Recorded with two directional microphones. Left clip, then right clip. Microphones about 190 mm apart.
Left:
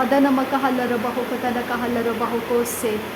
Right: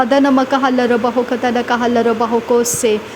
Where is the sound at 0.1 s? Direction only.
35° right (ahead or behind).